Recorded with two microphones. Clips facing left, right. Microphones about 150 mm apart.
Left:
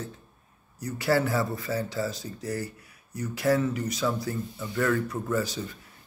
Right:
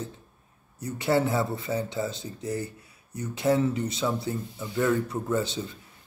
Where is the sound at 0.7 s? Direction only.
25° right (ahead or behind).